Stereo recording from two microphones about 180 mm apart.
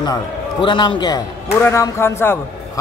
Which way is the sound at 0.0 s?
25° left (ahead or behind).